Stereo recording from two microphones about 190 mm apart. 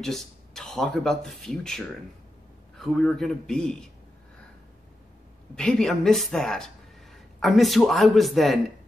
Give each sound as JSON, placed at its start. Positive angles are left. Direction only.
{"t": 0.0, "sound": "speech", "side_deg": 0}
{"t": 5.6, "sound": "speech", "side_deg": 5}